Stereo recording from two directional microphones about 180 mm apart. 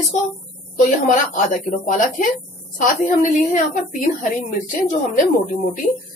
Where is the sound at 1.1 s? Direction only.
45° left (ahead or behind).